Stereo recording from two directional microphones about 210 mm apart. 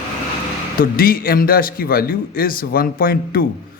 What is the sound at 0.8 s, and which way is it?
A man's voice, 45° left (ahead or behind).